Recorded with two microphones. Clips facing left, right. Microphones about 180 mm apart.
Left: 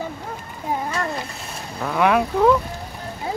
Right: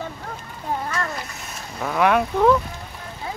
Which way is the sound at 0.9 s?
30° left (ahead or behind).